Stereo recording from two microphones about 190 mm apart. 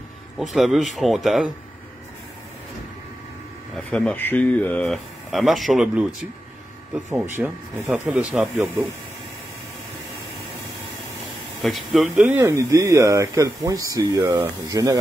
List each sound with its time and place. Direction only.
0.6 s speech: centre (ahead or behind)
3.7 s speech: 5° left (ahead or behind)
7.1 s speech: 10° right (ahead or behind)
11.6 s speech: centre (ahead or behind); by 15.0 s 20° right (ahead or behind)